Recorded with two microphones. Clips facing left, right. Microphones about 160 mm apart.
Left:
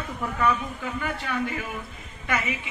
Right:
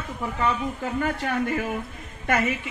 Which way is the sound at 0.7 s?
40° right (ahead or behind).